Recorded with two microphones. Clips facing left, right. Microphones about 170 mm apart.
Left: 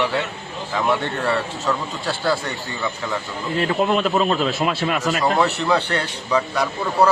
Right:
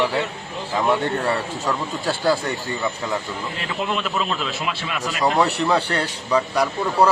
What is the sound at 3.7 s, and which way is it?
A man's voice, 45° left (ahead or behind).